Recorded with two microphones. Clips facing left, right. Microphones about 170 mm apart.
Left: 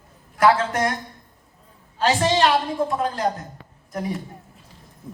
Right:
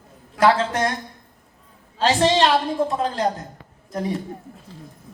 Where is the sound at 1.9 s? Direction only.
30° right (ahead or behind).